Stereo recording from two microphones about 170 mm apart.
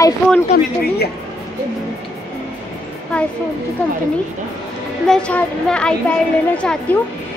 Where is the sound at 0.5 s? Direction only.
65° left (ahead or behind).